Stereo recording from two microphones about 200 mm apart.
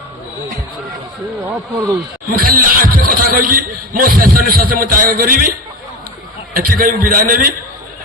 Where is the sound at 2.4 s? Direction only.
45° right (ahead or behind).